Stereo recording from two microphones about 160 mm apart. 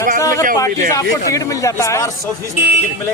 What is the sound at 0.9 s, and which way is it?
Speech, 20° left (ahead or behind).